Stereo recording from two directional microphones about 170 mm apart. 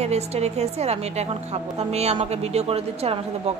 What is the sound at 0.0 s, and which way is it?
Speech, 40° right (ahead or behind).